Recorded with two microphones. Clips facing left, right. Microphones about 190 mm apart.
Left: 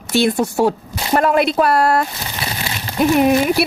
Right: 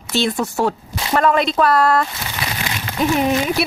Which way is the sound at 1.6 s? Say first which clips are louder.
Left 1 dB; 55° left (ahead or behind).